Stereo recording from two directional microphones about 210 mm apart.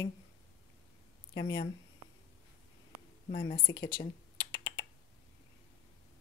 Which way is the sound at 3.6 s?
20° left (ahead or behind).